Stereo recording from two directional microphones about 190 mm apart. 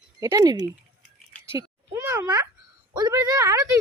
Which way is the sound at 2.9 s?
20° right (ahead or behind).